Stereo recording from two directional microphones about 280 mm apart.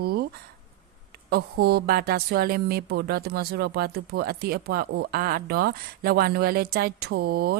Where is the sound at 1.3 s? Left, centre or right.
Right.